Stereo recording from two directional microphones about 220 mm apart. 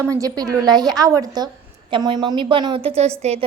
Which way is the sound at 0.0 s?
15° right (ahead or behind).